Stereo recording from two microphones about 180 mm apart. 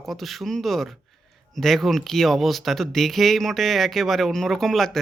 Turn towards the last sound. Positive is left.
turn(degrees=0)  # may be behind; listen again after turning